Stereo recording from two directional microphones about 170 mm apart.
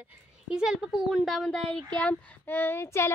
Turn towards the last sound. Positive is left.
turn(degrees=15)  # may be behind; listen again after turning